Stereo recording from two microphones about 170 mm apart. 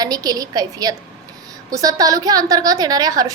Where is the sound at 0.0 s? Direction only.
20° right (ahead or behind).